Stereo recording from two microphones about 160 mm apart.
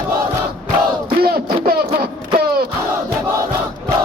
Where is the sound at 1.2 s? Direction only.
70° right (ahead or behind).